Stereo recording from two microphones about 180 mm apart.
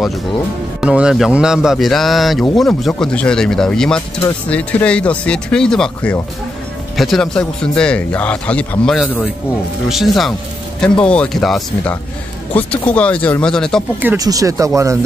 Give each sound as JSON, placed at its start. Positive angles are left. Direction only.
{"t": 0.7, "sound": "speech", "side_deg": -5}
{"t": 14.0, "sound": "speech", "side_deg": -20}